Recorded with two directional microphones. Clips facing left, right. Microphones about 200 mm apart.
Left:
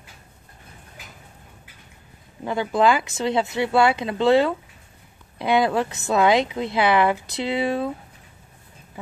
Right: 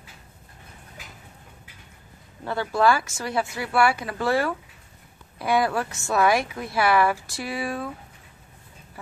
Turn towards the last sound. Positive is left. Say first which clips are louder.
# left 6 dB
turn(degrees=25)  # may be behind; listen again after turning